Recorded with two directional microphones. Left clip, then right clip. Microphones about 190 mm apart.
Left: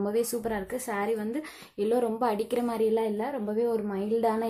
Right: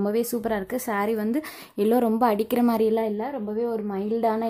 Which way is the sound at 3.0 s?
25° right (ahead or behind).